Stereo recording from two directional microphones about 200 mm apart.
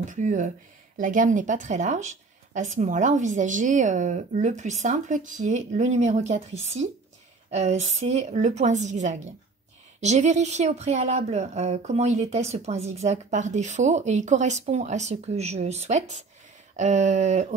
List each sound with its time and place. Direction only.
0.0 s speech: 40° right (ahead or behind)